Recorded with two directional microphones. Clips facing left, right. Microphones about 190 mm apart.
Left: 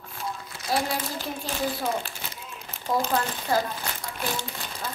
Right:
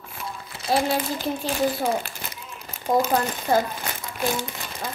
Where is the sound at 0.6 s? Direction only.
25° right (ahead or behind).